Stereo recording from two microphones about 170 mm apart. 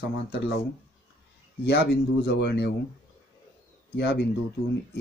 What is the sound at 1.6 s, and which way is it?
Speech, 80° left.